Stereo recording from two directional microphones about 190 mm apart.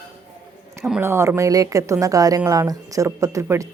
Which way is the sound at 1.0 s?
15° right (ahead or behind).